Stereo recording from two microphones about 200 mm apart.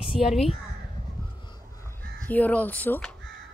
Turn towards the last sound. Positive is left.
turn(degrees=10)  # may be behind; listen again after turning